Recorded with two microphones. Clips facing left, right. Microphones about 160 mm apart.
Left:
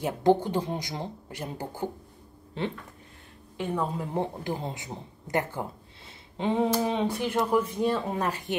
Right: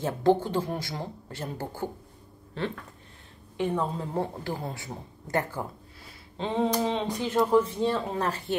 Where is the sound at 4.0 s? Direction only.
20° left (ahead or behind).